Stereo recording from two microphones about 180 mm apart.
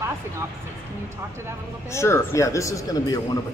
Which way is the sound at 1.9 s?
15° left (ahead or behind).